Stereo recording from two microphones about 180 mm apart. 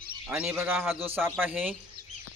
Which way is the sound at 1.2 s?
10° right (ahead or behind).